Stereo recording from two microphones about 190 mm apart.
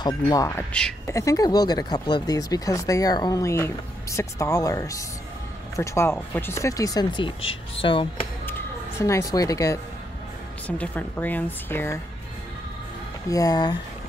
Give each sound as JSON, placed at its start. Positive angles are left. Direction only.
{"t": 0.0, "sound": "speech", "side_deg": 20}
{"t": 8.5, "sound": "music", "side_deg": 15}
{"t": 10.8, "sound": "speech", "side_deg": 10}
{"t": 13.3, "sound": "speech", "side_deg": 20}